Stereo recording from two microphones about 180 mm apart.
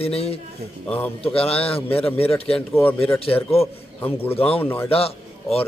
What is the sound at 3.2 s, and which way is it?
Speech, 35° left (ahead or behind).